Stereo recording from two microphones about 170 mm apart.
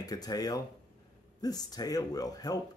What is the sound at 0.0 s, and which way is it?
Speech, 20° left (ahead or behind).